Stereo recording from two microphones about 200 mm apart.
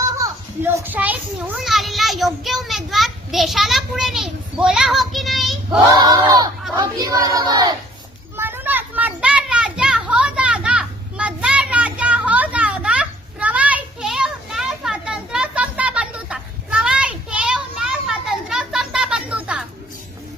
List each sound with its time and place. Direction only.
0.2 s a child's voice: 10° right (ahead or behind)
6.0 s speech: 20° right (ahead or behind)
8.4 s children playing: 10° right (ahead or behind)